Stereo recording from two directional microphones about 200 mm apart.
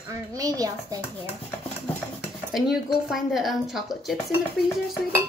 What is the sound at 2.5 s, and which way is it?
Speech, centre (ahead or behind).